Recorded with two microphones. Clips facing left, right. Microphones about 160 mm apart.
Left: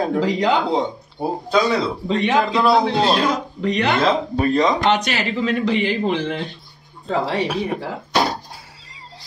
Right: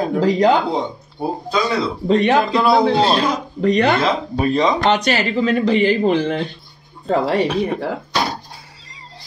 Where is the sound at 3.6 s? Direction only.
40° right (ahead or behind).